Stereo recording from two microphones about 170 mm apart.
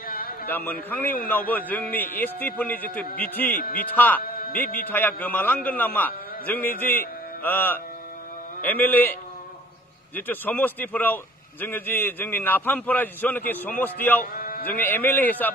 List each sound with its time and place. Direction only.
0.0 s a sound: 60° left (ahead or behind)
0.5 s a man's voice: 10° left (ahead or behind)
3.5 s a man's voice: 55° left (ahead or behind)
3.8 s a man's voice: 10° left (ahead or behind)
4.2 s music: 60° left (ahead or behind)
4.8 s a man's voice: 10° left (ahead or behind)
10.1 s a man's voice: 10° left (ahead or behind)
14.2 s a sound: 60° left (ahead or behind)
14.7 s a man's voice: 10° left (ahead or behind)